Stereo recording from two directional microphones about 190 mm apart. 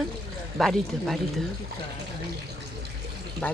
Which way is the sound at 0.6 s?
Centre (ahead or behind).